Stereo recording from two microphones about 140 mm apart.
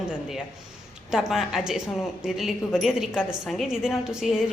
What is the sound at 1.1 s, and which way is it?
A woman's voice, 5° right (ahead or behind).